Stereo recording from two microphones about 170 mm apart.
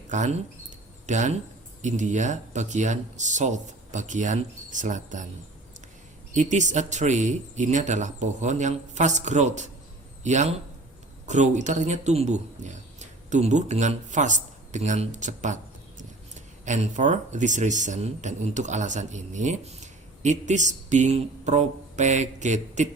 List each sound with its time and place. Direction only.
0.1 s speech: 45° right (ahead or behind)
6.3 s speech: 45° right (ahead or behind)
16.6 s speech: 45° right (ahead or behind)